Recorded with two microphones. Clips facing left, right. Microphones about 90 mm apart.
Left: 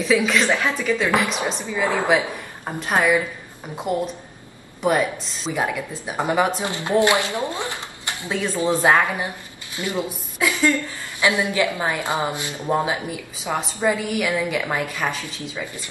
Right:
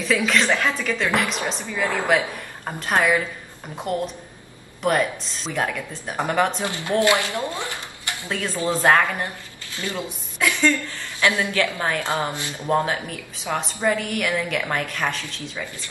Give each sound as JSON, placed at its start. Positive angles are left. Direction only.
{"t": 0.0, "sound": "a woman's voice", "side_deg": 0}
{"t": 1.7, "sound": "speech", "side_deg": 15}
{"t": 2.0, "sound": "a woman's voice", "side_deg": 5}